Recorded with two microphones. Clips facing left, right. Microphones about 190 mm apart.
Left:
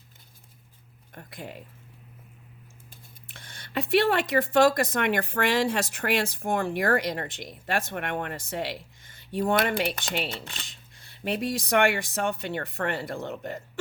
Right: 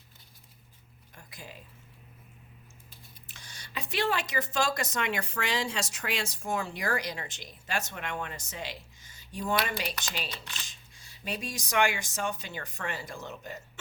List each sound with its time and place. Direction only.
1.1 s speech: 55° left (ahead or behind)
3.2 s speech: 55° left (ahead or behind)